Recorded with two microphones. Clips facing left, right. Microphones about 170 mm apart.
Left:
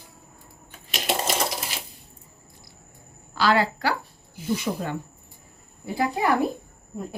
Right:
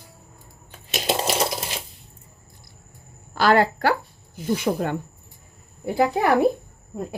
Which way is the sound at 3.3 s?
50° right (ahead or behind).